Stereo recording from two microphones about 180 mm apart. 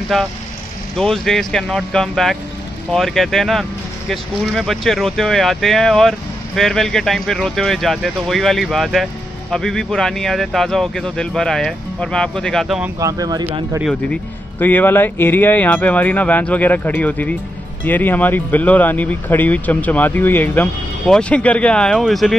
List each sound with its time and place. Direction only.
0.1 s speech: centre (ahead or behind)
13.0 s speech: 20° right (ahead or behind)
13.8 s speech: 5° left (ahead or behind)